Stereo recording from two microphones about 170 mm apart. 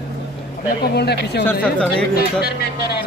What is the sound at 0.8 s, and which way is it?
Speech, 70° left (ahead or behind).